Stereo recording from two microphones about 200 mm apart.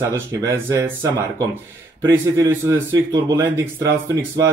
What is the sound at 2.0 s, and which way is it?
Speech, 15° right (ahead or behind).